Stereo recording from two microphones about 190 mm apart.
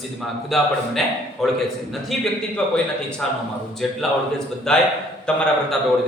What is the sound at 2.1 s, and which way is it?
Speech, centre (ahead or behind).